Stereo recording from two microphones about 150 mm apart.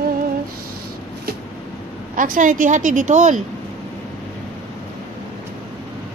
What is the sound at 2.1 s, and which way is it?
A woman's voice, 65° right (ahead or behind).